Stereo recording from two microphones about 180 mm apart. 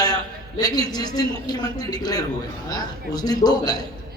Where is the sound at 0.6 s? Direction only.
20° left (ahead or behind).